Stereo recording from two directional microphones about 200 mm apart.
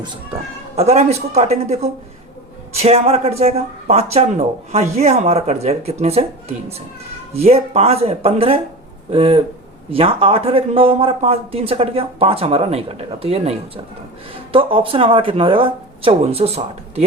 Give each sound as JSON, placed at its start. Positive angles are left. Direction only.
{"t": 0.8, "sound": "speech", "side_deg": -35}
{"t": 7.3, "sound": "speech", "side_deg": -30}
{"t": 14.5, "sound": "speech", "side_deg": -25}